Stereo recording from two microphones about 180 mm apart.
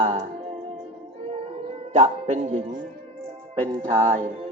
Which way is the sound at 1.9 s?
40° right (ahead or behind).